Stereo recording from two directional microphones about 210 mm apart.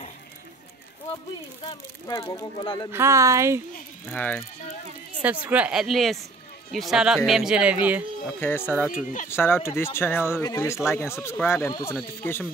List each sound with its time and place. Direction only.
1.7 s speech: 20° left (ahead or behind)
2.9 s speech: 10° right (ahead or behind)
4.1 s speech: 10° left (ahead or behind)
5.2 s speech: 5° right (ahead or behind)
8.4 s speech: 10° left (ahead or behind)
8.9 s speech: 40° left (ahead or behind)
9.3 s speech: 10° left (ahead or behind)